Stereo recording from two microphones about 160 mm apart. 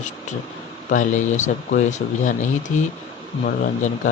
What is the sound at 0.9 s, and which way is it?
Speech, 50° left (ahead or behind).